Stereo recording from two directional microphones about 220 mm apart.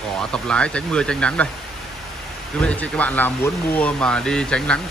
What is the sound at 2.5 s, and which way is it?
Speech, 5° left (ahead or behind).